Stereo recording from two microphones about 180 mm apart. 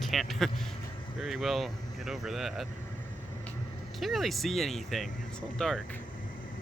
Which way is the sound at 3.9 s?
Centre (ahead or behind).